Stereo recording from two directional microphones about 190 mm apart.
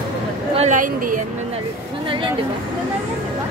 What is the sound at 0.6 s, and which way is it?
Speech, 45° right (ahead or behind).